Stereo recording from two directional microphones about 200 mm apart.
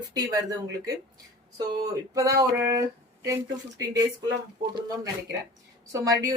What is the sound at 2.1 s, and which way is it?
Speech, 15° right (ahead or behind).